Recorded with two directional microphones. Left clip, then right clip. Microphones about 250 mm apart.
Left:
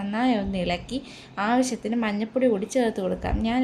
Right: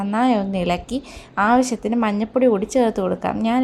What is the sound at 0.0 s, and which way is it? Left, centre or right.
A woman's voice, centre.